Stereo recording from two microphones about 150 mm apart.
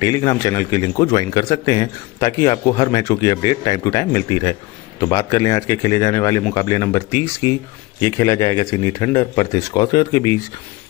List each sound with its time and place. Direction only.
0.0 s a man's voice: 25° left (ahead or behind)